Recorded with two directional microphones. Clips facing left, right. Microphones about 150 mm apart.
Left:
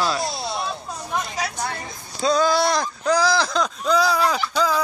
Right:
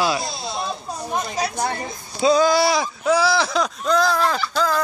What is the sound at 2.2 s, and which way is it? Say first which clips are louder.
Speech: right 3 dB; 5° right (ahead or behind).